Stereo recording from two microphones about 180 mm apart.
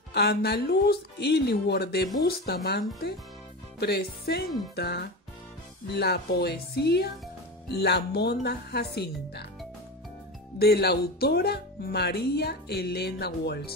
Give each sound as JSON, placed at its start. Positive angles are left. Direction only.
{"t": 0.1, "sound": "speech", "side_deg": 65}
{"t": 3.8, "sound": "speech", "side_deg": 60}
{"t": 10.6, "sound": "speech", "side_deg": 60}